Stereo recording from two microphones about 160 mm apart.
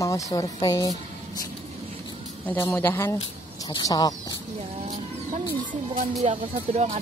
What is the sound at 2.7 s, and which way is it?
Speech, 15° left (ahead or behind).